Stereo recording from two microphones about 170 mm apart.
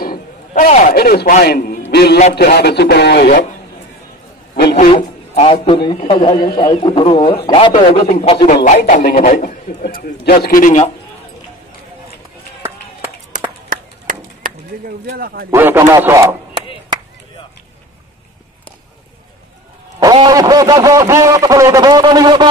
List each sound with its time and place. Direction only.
0.5 s a man's voice: 45° left (ahead or behind)
0.9 s a man's voice: 60° left (ahead or behind)
1.9 s a man's voice: 75° left (ahead or behind)
4.7 s a man's voice: 40° left (ahead or behind)
13.7 s chop: 50° right (ahead or behind)
15.1 s speech: 65° right (ahead or behind)
15.5 s a man's voice: 15° right (ahead or behind)
20.0 s speech: 25° right (ahead or behind)